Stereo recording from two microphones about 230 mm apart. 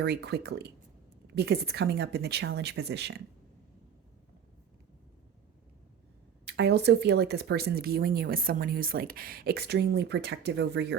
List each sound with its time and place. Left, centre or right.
0.0 s speech: right
6.4 s speech: right